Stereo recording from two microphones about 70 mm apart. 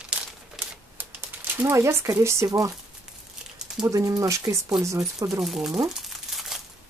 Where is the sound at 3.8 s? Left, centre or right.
Right.